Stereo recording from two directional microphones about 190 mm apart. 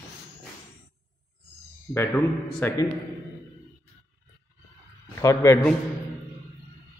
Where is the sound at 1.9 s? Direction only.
10° left (ahead or behind).